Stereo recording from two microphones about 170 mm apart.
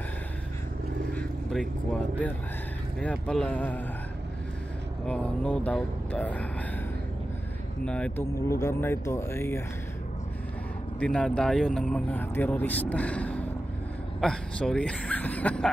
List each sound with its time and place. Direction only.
1.1 s vehicle: centre (ahead or behind)
3.0 s speech: 5° left (ahead or behind)
5.0 s speech: 5° left (ahead or behind)
7.8 s speech: 5° left (ahead or behind)
8.4 s speech: 15° left (ahead or behind)
11.0 s speech: 5° left (ahead or behind)